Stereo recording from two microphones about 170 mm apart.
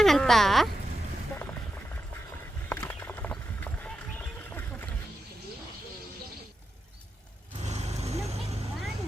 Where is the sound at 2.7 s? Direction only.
10° left (ahead or behind).